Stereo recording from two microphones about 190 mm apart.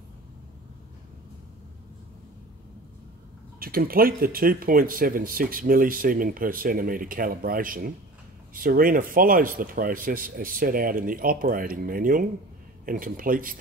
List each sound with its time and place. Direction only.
3.5 s speech: 50° right (ahead or behind)